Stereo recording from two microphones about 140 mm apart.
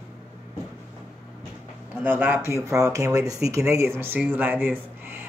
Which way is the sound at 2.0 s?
15° right (ahead or behind).